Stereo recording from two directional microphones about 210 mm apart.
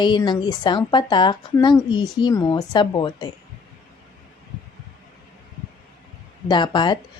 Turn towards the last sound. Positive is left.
turn(degrees=20)  # may be behind; listen again after turning